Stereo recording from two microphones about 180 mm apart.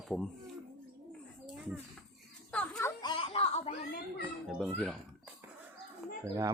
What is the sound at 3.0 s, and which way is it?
Music, 30° left (ahead or behind).